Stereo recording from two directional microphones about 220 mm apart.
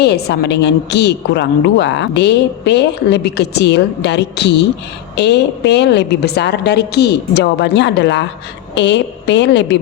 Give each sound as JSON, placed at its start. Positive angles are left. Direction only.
{"t": 0.0, "sound": "a woman's voice", "side_deg": 50}